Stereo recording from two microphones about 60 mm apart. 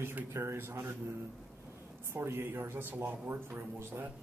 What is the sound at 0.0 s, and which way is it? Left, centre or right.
A man's voice, right.